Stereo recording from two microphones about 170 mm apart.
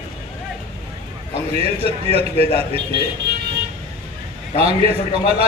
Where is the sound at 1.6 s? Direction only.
35° right (ahead or behind).